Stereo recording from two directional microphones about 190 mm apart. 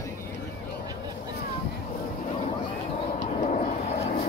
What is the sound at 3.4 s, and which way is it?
Vehicle, 40° left (ahead or behind).